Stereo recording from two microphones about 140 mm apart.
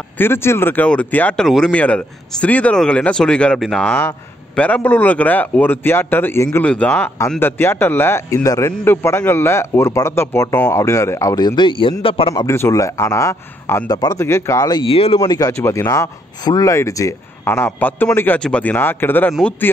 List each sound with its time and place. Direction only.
0.2 s a man's voice: 15° left (ahead or behind); by 12.4 s 40° left (ahead or behind)
12.4 s a man's voice: 20° left (ahead or behind)
14.7 s a man's voice: 40° left (ahead or behind)
15.1 s speech: 25° left (ahead or behind)